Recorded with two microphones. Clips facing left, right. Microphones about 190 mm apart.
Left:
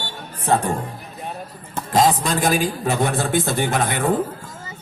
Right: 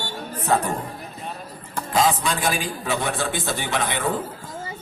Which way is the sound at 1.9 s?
40° left (ahead or behind).